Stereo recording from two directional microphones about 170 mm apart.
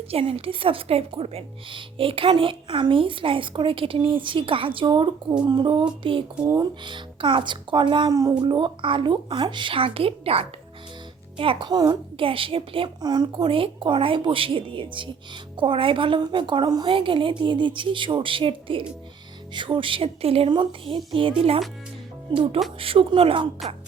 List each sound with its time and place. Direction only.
0.1 s a woman's voice: 35° right (ahead or behind)